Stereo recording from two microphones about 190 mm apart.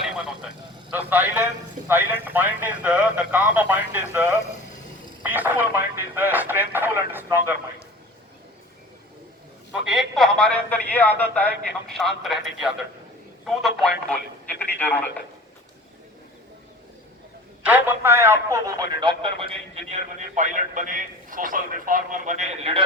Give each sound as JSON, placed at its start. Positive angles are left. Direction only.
{"t": 0.0, "sound": "a sound", "side_deg": -5}
{"t": 1.9, "sound": "speech", "side_deg": -10}
{"t": 5.3, "sound": "speech", "side_deg": -10}
{"t": 9.9, "sound": "speech", "side_deg": 0}
{"t": 17.6, "sound": "a man's voice", "side_deg": -10}